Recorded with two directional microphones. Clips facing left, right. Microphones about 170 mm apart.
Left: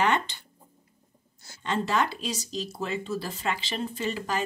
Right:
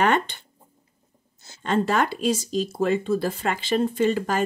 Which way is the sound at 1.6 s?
50° right (ahead or behind).